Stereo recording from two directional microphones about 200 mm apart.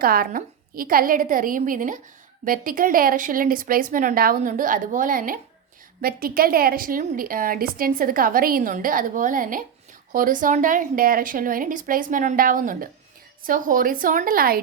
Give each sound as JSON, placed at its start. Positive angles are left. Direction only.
{"t": 0.0, "sound": "a woman's voice", "side_deg": -45}